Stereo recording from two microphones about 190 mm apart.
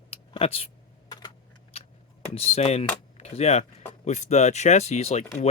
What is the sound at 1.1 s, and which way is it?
Computer keyboard, 25° left (ahead or behind).